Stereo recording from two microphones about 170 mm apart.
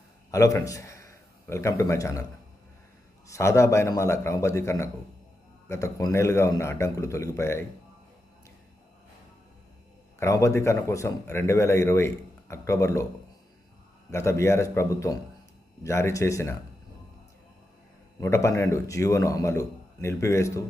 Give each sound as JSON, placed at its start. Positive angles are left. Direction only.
{"t": 0.3, "sound": "a man's voice", "side_deg": 20}
{"t": 3.2, "sound": "speech", "side_deg": 15}
{"t": 10.2, "sound": "speech", "side_deg": 15}
{"t": 14.1, "sound": "speech", "side_deg": 15}
{"t": 18.2, "sound": "speech", "side_deg": 15}